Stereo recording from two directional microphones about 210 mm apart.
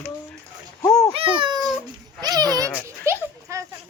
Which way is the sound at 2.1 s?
20° right (ahead or behind).